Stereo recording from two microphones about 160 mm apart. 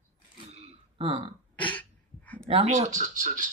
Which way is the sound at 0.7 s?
35° right (ahead or behind).